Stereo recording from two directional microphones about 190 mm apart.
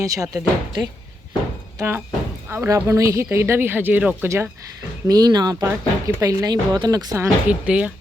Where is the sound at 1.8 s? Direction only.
10° right (ahead or behind).